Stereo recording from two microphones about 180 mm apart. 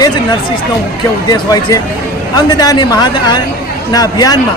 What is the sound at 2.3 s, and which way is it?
A woman's voice, 20° left (ahead or behind).